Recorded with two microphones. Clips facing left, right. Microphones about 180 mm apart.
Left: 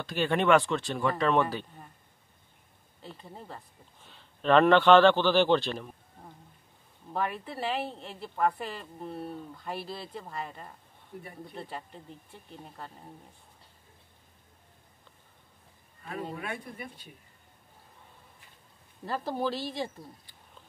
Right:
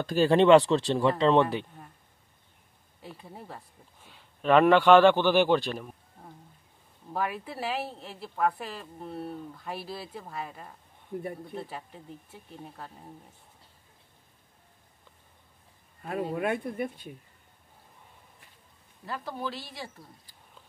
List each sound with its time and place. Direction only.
0.0 s speech: 40° right (ahead or behind)
3.0 s speech: 10° right (ahead or behind)
7.1 s speech: 5° right (ahead or behind)
16.0 s speech: 45° right (ahead or behind)
19.0 s speech: 30° left (ahead or behind)